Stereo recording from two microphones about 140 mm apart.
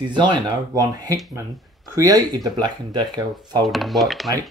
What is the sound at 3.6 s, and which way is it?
Speech, centre (ahead or behind).